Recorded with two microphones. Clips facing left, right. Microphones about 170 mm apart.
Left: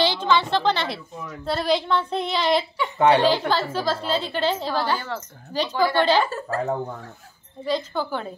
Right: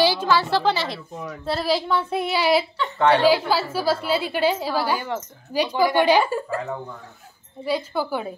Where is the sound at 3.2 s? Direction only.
10° right (ahead or behind).